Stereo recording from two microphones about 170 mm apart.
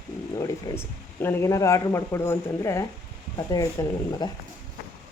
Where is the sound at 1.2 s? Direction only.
15° left (ahead or behind).